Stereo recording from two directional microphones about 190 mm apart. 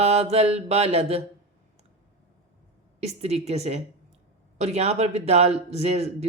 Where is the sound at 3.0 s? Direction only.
35° right (ahead or behind).